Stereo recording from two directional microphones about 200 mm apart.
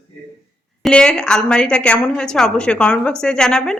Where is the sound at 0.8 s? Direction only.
5° left (ahead or behind).